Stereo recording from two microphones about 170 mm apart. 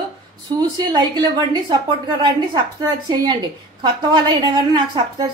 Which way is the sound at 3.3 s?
25° right (ahead or behind).